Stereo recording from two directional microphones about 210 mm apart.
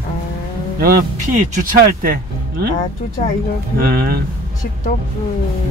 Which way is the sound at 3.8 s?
45° right (ahead or behind).